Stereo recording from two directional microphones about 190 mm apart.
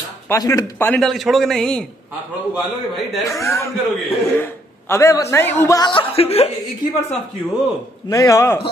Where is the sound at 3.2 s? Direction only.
15° left (ahead or behind); by 6.5 s 30° left (ahead or behind).